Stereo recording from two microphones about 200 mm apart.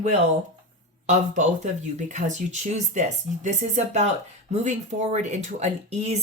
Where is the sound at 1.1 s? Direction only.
40° right (ahead or behind).